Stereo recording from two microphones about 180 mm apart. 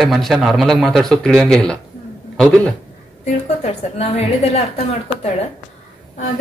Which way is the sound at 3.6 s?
35° left (ahead or behind).